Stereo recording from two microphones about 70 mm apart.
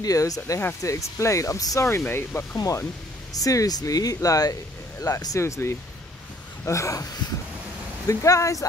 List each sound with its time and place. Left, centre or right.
0.0 s speech: left
1.9 s speech: left
2.5 s speech: left
8.1 s speech: left